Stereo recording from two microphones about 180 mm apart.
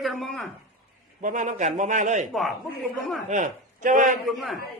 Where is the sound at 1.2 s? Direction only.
45° right (ahead or behind).